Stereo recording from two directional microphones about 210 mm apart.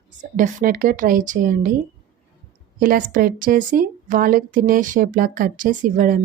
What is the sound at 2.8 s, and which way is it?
Speech, 40° right (ahead or behind).